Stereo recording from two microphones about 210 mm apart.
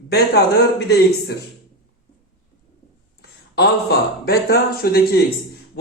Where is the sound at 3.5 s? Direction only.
50° left (ahead or behind).